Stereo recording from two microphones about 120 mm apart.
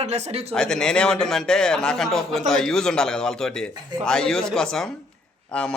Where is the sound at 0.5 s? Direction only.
5° left (ahead or behind).